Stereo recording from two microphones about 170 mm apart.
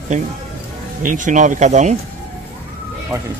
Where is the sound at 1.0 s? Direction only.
50° right (ahead or behind).